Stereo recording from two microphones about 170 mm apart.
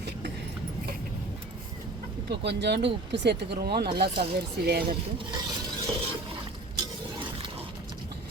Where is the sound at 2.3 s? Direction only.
90° right; by 4.9 s 65° right (ahead or behind).